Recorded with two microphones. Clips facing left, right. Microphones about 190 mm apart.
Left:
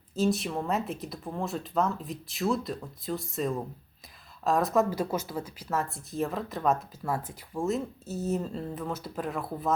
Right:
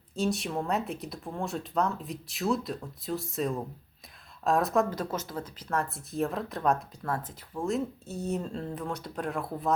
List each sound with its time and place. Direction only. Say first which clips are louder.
0.2 s speech: left 2 dB; centre (ahead or behind)